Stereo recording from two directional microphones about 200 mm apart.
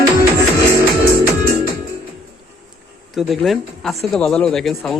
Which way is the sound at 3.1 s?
Centre (ahead or behind).